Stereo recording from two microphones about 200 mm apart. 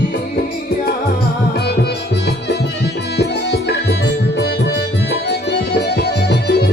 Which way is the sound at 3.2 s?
60° left (ahead or behind).